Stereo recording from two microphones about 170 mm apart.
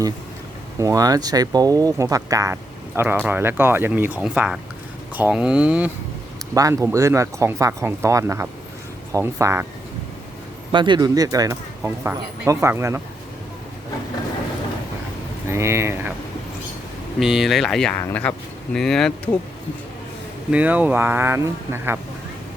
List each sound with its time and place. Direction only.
0.8 s speech: 20° right (ahead or behind)
6.5 s speech: 20° right (ahead or behind)
10.7 s speech: 25° right (ahead or behind)
15.4 s speech: 15° right (ahead or behind)
17.2 s speech: centre (ahead or behind)
20.5 s speech: 10° right (ahead or behind)